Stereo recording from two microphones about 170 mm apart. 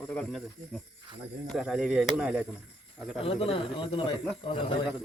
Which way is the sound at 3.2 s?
35° left (ahead or behind).